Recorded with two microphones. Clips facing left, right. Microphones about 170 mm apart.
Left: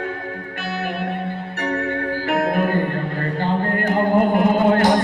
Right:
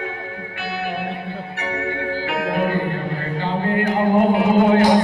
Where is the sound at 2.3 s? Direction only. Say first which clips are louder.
Left 3 dB; 45° left (ahead or behind).